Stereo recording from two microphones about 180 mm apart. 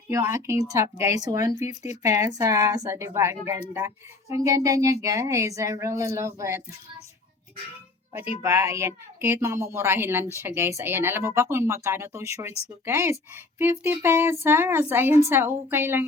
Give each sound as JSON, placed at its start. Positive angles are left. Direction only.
{"t": 0.1, "sound": "speech", "side_deg": -15}
{"t": 8.1, "sound": "speech", "side_deg": -15}